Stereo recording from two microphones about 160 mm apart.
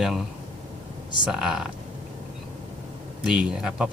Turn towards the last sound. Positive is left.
turn(degrees=-5)  # may be behind; listen again after turning